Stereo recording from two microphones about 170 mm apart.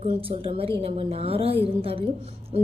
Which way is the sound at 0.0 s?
35° right (ahead or behind).